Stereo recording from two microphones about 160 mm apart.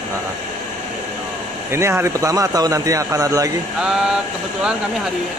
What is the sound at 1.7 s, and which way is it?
A man's voice, 15° right (ahead or behind).